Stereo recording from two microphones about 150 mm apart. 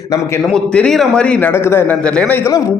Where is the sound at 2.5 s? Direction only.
25° left (ahead or behind).